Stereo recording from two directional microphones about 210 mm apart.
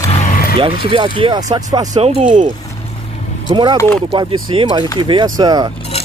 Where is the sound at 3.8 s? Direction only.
10° left (ahead or behind).